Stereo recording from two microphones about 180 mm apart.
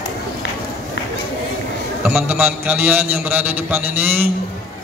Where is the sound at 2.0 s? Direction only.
5° right (ahead or behind).